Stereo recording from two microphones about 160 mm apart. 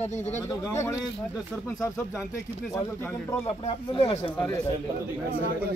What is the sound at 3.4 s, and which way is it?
Speech, 35° left (ahead or behind).